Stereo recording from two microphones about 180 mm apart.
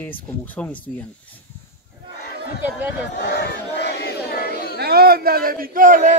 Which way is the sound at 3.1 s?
70° left (ahead or behind).